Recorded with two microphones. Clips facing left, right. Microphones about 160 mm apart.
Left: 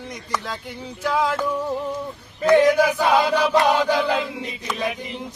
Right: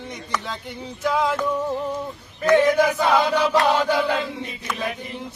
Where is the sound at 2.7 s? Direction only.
10° left (ahead or behind).